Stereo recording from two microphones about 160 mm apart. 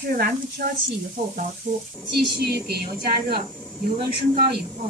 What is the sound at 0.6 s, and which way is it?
Speech, 65° right (ahead or behind).